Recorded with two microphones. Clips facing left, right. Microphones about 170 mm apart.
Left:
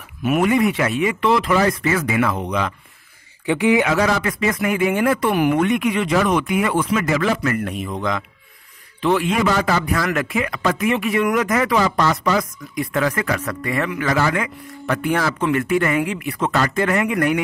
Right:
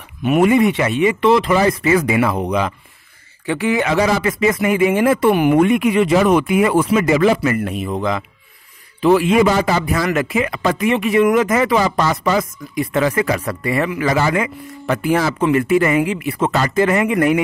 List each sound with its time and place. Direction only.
0.2 s speech: centre (ahead or behind)
1.9 s a man's voice: 10° right (ahead or behind)
3.4 s a man's voice: 15° left (ahead or behind)
3.8 s speech: 5° right (ahead or behind)
9.0 s a man's voice: 5° right (ahead or behind)
9.8 s speech: 5° right (ahead or behind)